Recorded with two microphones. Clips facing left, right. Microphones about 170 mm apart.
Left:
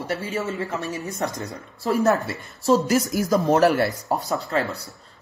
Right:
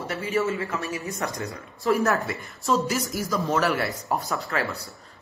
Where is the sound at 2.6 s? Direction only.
40° left (ahead or behind).